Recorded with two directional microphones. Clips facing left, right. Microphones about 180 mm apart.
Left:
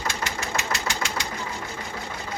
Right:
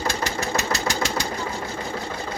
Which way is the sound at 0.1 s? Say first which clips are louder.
Right 3 dB; 40° right (ahead or behind).